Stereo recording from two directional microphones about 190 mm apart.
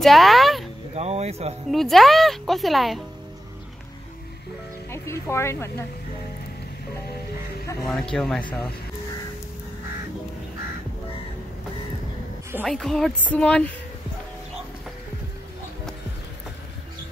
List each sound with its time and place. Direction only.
0.0 s a sound: centre (ahead or behind)
0.9 s speech: 35° right (ahead or behind)
1.7 s speech: centre (ahead or behind)
4.9 s speech: 15° left (ahead or behind)
7.8 s speech: centre (ahead or behind)
12.6 s speech: centre (ahead or behind)